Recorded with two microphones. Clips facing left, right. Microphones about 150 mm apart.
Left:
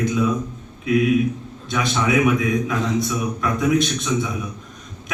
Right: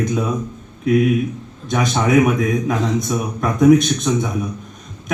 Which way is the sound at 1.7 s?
45° right (ahead or behind).